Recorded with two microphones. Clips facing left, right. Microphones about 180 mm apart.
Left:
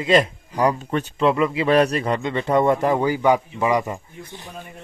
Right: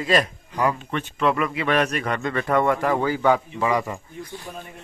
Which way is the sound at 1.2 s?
25° left (ahead or behind).